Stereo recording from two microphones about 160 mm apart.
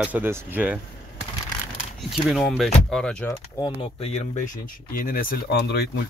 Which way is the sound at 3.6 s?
35° left (ahead or behind).